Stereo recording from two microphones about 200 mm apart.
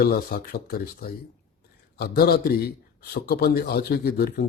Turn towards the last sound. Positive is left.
turn(degrees=50)  # may be behind; listen again after turning